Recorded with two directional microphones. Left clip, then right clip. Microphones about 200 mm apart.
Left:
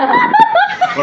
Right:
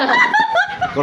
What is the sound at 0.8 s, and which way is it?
Snicker, centre (ahead or behind).